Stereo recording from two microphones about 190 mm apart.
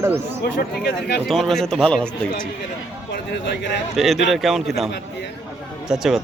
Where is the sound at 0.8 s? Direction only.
60° left (ahead or behind).